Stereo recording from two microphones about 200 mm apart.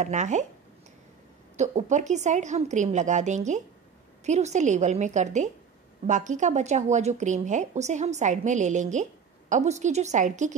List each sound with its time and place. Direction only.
0.0 s a woman's voice: 35° right (ahead or behind)
1.6 s a woman's voice: 35° right (ahead or behind)